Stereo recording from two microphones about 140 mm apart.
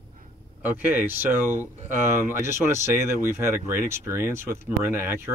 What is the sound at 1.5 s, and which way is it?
Speech, 50° right (ahead or behind).